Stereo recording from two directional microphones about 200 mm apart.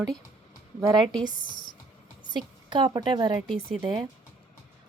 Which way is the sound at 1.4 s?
40° left (ahead or behind).